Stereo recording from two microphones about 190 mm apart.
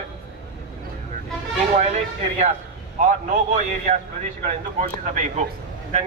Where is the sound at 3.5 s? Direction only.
40° right (ahead or behind).